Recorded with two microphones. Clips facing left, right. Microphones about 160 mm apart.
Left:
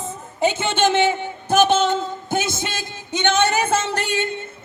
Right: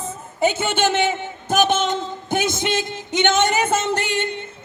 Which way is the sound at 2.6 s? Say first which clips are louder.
Right 6 dB; 15° right (ahead or behind).